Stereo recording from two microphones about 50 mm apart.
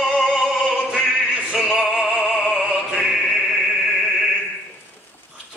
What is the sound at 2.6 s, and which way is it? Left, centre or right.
Opera, centre.